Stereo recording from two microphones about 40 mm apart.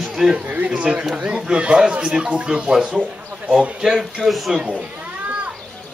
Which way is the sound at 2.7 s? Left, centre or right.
Centre.